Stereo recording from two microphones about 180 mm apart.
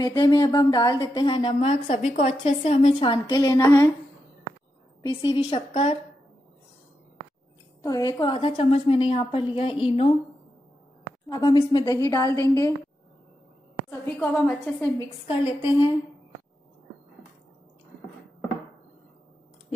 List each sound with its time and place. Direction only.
0.0 s a woman's voice: 25° left (ahead or behind)
5.0 s a woman's voice: 30° left (ahead or behind)
7.8 s a woman's voice: 20° left (ahead or behind)
11.2 s a woman's voice: 20° left (ahead or behind)
13.8 s a woman's voice: 10° left (ahead or behind)
15.0 s a woman's voice: 25° left (ahead or behind)